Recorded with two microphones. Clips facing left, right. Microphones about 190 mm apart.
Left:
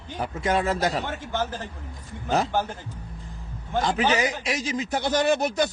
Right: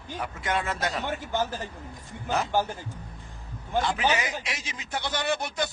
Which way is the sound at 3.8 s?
40° left (ahead or behind).